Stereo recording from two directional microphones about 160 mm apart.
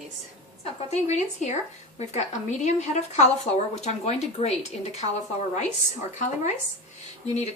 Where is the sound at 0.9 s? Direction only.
45° left (ahead or behind).